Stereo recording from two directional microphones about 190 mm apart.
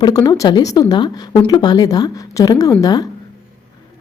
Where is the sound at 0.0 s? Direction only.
20° left (ahead or behind).